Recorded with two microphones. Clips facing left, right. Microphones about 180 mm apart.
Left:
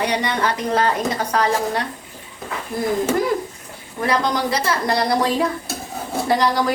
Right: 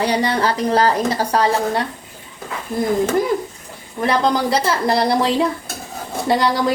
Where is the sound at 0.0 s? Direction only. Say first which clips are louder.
Right 3 dB; 35° right (ahead or behind).